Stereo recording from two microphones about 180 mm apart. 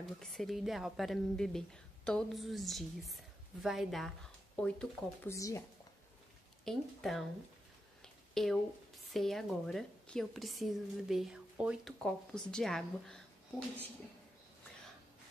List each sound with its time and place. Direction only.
0.2 s a woman's voice: centre (ahead or behind); by 5.6 s 15° left (ahead or behind)
6.6 s a woman's voice: centre (ahead or behind)
8.0 s a sound: centre (ahead or behind)
9.1 s a woman's voice: centre (ahead or behind)